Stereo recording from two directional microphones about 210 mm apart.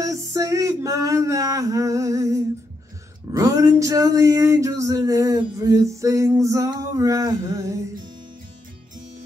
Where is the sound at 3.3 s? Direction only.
15° right (ahead or behind).